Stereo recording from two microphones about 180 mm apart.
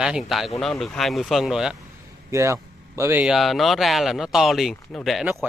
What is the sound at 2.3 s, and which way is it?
Speech, 15° right (ahead or behind).